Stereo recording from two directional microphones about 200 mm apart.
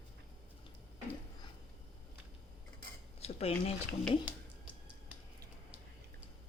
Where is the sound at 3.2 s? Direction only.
30° left (ahead or behind).